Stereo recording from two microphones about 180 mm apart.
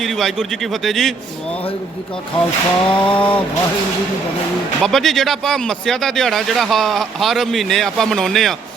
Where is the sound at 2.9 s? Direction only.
5° left (ahead or behind).